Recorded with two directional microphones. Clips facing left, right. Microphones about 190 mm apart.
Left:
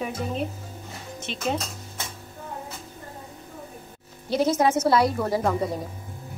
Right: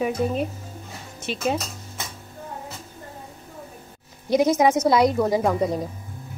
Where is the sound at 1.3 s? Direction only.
5° right (ahead or behind).